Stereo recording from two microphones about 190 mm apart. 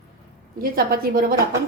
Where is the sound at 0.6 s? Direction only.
50° right (ahead or behind).